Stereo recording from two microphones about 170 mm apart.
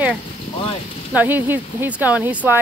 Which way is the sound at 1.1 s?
10° right (ahead or behind).